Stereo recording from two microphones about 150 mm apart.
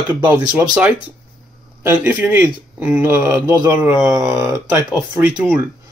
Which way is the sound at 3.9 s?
5° right (ahead or behind).